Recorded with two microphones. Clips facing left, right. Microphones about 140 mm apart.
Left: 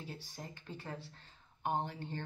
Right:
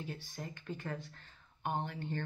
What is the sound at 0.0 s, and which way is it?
Speech, 35° left (ahead or behind).